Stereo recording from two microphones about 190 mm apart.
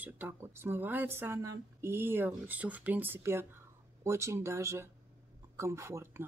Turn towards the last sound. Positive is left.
turn(degrees=-15)  # may be behind; listen again after turning